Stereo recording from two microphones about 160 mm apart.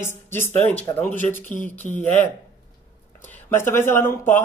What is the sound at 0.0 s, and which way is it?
Speech, 15° left (ahead or behind).